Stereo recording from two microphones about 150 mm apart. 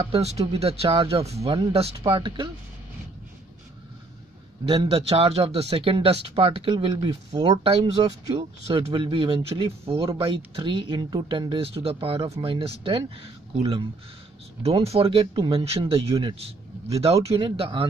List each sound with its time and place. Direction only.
0.0 s speech: 40° right (ahead or behind)
4.6 s speech: 40° right (ahead or behind)